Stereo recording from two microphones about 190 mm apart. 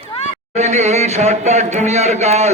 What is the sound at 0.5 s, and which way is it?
Speech, 35° right (ahead or behind).